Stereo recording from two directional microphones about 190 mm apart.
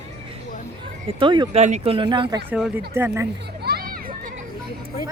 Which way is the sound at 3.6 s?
55° right (ahead or behind).